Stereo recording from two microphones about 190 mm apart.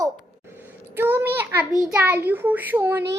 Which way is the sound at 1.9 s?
10° right (ahead or behind).